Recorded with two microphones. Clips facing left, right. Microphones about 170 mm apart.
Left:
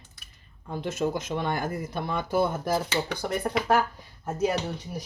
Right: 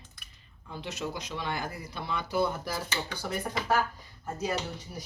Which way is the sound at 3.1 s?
65° left (ahead or behind).